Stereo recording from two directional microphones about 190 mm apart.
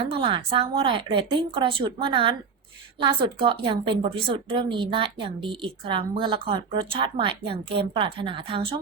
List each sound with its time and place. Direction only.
0.0 s a woman's voice: 30° right (ahead or behind)